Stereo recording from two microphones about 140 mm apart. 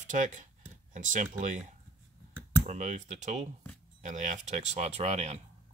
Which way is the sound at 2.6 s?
55° right (ahead or behind).